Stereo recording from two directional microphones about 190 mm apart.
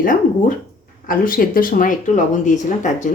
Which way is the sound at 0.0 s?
45° left (ahead or behind).